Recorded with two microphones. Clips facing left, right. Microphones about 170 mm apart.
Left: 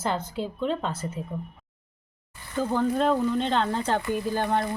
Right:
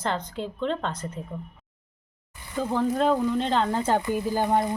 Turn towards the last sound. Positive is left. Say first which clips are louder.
# right 2 dB
turn(degrees=-15)  # may be behind; listen again after turning